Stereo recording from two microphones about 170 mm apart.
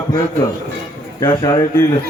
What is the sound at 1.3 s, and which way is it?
Music, 25° left (ahead or behind).